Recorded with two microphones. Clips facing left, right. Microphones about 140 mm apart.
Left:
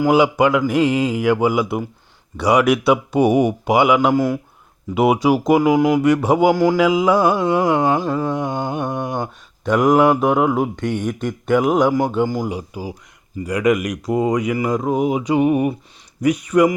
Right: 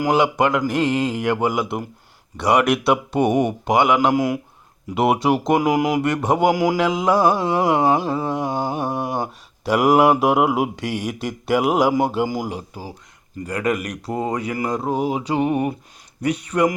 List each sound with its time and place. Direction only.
0.0 s speech: 5° left (ahead or behind)
4.1 s mantra: 15° right (ahead or behind)
4.9 s speech: centre (ahead or behind)
6.5 s mantra: 10° right (ahead or behind)
6.7 s speech: 5° left (ahead or behind)
8.8 s mantra: 5° right (ahead or behind)
12.0 s speech: 5° right (ahead or behind)
12.5 s speech: 10° left (ahead or behind)
14.5 s speech: centre (ahead or behind)
16.2 s speech: 30° right (ahead or behind)